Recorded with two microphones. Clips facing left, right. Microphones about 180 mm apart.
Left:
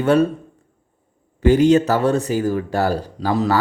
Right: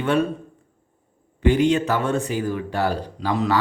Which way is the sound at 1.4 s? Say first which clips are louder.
Left 5 dB; 40° left (ahead or behind).